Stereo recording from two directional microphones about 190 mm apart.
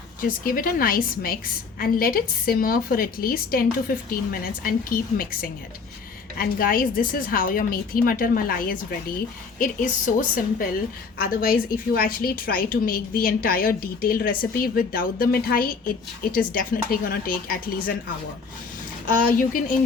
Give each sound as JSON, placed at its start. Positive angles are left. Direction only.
{"t": 0.2, "sound": "a woman's voice", "side_deg": 50}
{"t": 19.0, "sound": "a woman's voice", "side_deg": 45}